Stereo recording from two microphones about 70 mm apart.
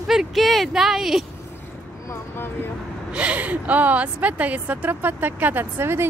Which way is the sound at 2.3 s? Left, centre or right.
Left.